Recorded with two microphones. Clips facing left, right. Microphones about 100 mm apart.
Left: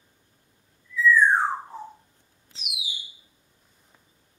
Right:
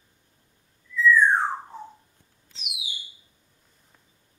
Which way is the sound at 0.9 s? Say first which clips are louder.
Even; centre (ahead or behind).